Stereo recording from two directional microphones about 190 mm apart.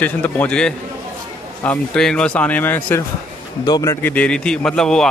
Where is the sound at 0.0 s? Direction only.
10° left (ahead or behind).